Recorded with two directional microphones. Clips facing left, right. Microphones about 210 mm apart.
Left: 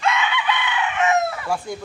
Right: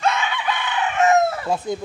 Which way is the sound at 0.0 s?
40° right (ahead or behind).